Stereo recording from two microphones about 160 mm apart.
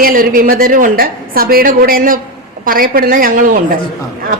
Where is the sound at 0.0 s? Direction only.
60° right (ahead or behind).